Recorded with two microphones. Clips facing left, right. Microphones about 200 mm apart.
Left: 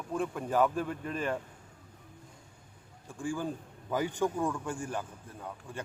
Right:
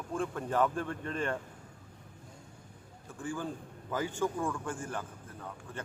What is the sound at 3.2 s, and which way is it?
A man's voice, 15° left (ahead or behind).